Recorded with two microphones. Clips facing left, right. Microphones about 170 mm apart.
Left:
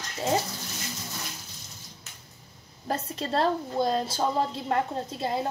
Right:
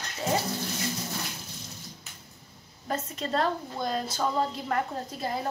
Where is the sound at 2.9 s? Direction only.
30° left (ahead or behind).